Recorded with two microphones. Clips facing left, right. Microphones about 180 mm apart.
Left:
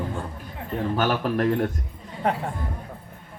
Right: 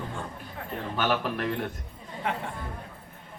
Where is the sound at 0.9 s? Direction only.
40° left (ahead or behind).